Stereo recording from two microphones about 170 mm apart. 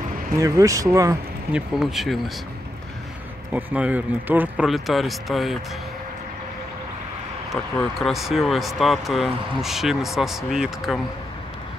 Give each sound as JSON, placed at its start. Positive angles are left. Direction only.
{"t": 0.4, "sound": "speech", "side_deg": -20}
{"t": 1.5, "sound": "speech", "side_deg": -5}
{"t": 3.5, "sound": "speech", "side_deg": -10}
{"t": 8.0, "sound": "speech", "side_deg": 0}